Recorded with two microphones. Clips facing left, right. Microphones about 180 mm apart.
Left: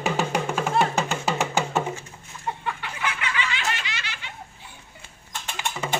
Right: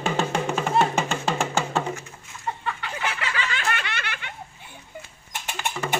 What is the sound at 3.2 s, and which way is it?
Snicker, 40° right (ahead or behind).